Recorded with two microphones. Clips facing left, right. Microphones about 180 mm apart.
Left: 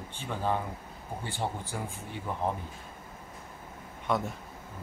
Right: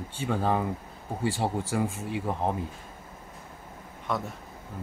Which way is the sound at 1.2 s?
90° right.